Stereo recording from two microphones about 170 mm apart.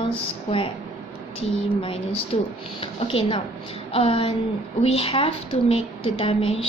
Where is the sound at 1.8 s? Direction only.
30° left (ahead or behind).